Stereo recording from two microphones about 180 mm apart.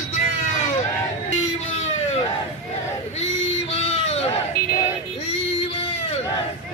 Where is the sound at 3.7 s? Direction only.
35° left (ahead or behind).